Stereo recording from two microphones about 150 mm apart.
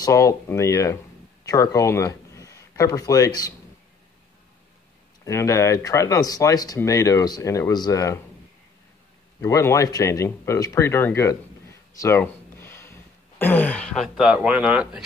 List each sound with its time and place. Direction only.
0.0 s speech: 20° left (ahead or behind)
5.2 s speech: 20° left (ahead or behind)
9.4 s speech: 20° left (ahead or behind)
12.2 s a sound: 15° left (ahead or behind); by 15.0 s 5° right (ahead or behind)